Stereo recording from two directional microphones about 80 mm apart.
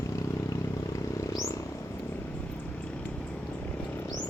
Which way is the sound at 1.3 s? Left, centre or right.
Left.